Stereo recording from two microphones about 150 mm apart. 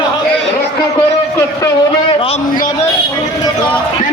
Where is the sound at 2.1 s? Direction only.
35° left (ahead or behind).